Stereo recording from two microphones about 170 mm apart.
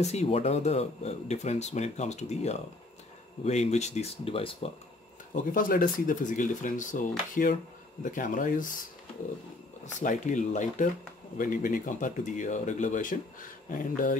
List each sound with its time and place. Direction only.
0.0 s speech: 40° left (ahead or behind)
5.3 s speech: 55° left (ahead or behind)
9.9 s speech: 45° left (ahead or behind)